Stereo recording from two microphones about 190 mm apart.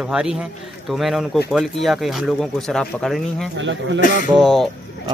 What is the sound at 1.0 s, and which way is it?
Speech, centre (ahead or behind).